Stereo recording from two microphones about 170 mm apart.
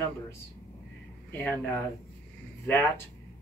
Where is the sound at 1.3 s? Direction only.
10° left (ahead or behind).